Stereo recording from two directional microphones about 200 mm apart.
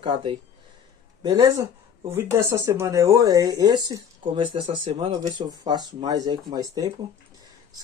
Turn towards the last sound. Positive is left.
turn(degrees=-15)  # may be behind; listen again after turning